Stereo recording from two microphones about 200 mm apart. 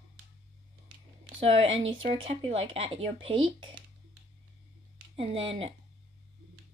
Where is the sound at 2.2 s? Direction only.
30° right (ahead or behind).